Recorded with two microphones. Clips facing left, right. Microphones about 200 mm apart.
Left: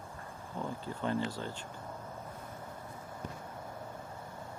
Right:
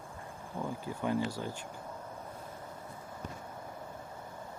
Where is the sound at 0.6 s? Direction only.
10° right (ahead or behind).